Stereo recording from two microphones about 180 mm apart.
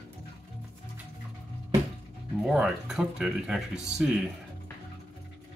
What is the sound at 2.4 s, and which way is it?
Speech, 5° right (ahead or behind).